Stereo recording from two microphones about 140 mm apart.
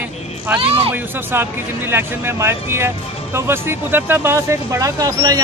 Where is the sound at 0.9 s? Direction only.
15° right (ahead or behind).